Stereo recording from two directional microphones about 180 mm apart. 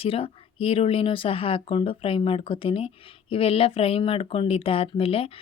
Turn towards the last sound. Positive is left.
turn(degrees=30)  # may be behind; listen again after turning